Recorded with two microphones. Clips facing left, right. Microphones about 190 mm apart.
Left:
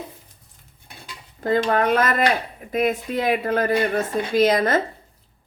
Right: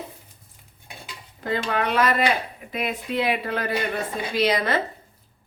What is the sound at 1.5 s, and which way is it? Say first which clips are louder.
Speech: left 6 dB; 45° left (ahead or behind).